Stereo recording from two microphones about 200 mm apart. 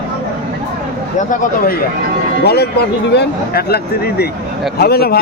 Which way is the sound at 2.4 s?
55° left (ahead or behind).